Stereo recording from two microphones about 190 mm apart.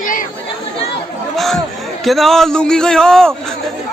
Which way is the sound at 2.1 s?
Centre (ahead or behind).